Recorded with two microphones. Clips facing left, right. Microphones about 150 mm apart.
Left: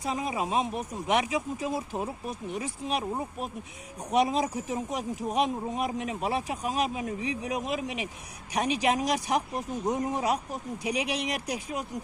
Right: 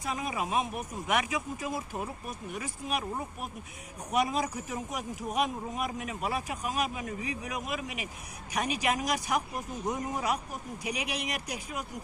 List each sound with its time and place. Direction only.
0.0 s speech: 25° left (ahead or behind)